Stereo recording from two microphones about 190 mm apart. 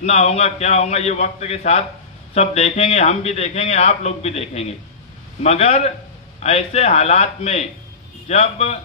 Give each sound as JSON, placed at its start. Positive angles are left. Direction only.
{"t": 0.0, "sound": "a man's voice", "side_deg": 35}